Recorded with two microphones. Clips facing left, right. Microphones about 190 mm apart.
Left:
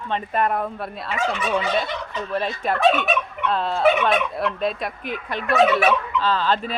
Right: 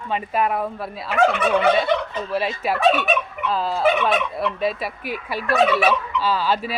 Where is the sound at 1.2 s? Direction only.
60° right (ahead or behind).